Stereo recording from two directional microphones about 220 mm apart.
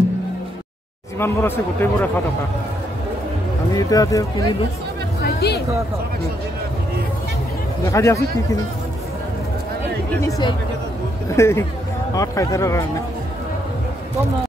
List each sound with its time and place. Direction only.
1.2 s a man's voice: 10° left (ahead or behind)
3.7 s a man's voice: 15° left (ahead or behind)
5.2 s hubbub: 45° left (ahead or behind)
7.8 s a man's voice: 15° left (ahead or behind)
10.2 s a man's voice: 15° left (ahead or behind)